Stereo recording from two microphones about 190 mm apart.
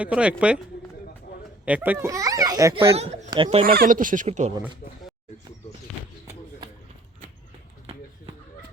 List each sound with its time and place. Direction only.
0.0 s speech: 5° right (ahead or behind)
1.6 s a child's voice: 10° right (ahead or behind)
2.9 s speech: 30° right (ahead or behind)
3.6 s speech: 50° right (ahead or behind)